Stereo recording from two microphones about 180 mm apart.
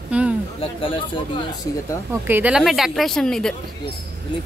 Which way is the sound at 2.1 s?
10° right (ahead or behind).